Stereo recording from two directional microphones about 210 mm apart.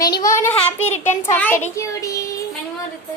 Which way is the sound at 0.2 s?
15° left (ahead or behind).